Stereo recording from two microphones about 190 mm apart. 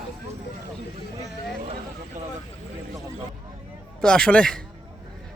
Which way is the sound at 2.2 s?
40° right (ahead or behind).